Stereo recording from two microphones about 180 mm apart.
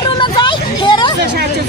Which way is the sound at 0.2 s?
25° left (ahead or behind).